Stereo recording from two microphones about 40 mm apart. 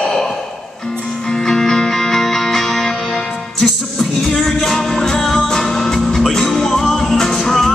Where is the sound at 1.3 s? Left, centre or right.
Centre.